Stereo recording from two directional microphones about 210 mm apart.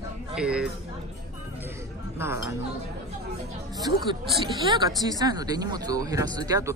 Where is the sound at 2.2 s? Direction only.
10° right (ahead or behind).